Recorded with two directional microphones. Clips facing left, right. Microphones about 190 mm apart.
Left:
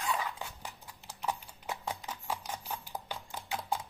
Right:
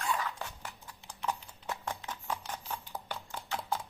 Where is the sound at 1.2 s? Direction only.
10° left (ahead or behind).